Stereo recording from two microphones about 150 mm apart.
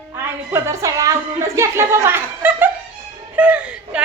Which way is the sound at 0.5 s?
20° right (ahead or behind).